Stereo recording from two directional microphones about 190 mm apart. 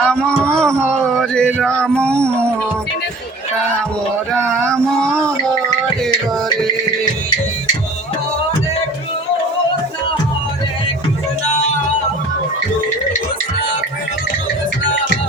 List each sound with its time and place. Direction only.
0.0 s male singing: 5° left (ahead or behind)
4.3 s male singing: 5° left (ahead or behind)